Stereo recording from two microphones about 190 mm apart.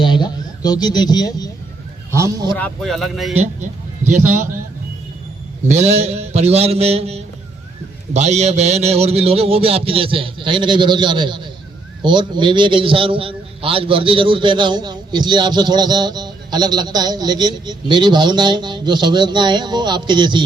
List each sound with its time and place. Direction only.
0.0 s a sound: 25° left (ahead or behind)
2.1 s a man's voice: 15° right (ahead or behind)
2.6 s speech: 5° left (ahead or behind)
5.6 s a man's voice: 35° right (ahead or behind)